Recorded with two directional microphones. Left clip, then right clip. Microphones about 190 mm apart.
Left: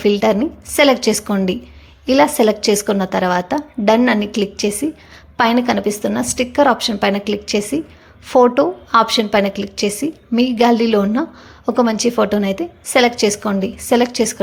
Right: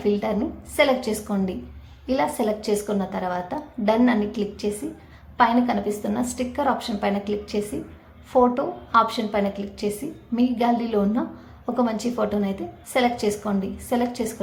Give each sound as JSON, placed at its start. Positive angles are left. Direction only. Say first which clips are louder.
{"t": 0.0, "sound": "a woman's voice", "louder": "left 9 dB", "side_deg": 40}